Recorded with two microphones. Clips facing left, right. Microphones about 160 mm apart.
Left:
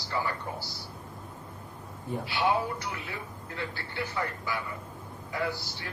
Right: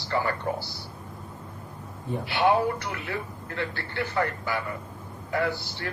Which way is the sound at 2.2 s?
60° right (ahead or behind).